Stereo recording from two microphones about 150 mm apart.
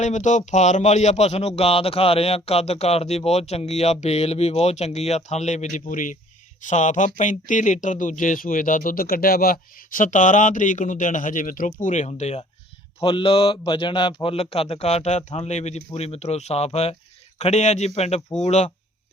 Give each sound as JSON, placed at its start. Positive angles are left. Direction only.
{"t": 0.0, "sound": "speech", "side_deg": 55}
{"t": 13.0, "sound": "speech", "side_deg": 35}